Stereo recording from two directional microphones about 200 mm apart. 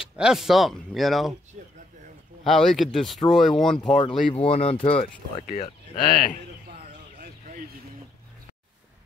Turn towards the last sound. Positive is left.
turn(degrees=-45)  # may be behind; listen again after turning